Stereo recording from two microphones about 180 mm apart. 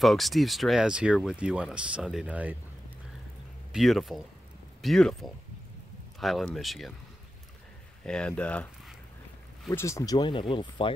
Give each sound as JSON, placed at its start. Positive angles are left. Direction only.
{"t": 0.0, "sound": "speech", "side_deg": 0}
{"t": 3.7, "sound": "speech", "side_deg": 0}
{"t": 8.0, "sound": "speech", "side_deg": 5}